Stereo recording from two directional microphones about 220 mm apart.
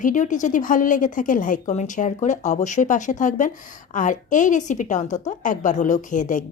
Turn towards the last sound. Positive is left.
turn(degrees=35)  # may be behind; listen again after turning